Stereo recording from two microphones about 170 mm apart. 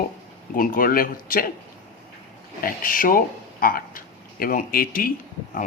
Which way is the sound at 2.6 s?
55° left (ahead or behind).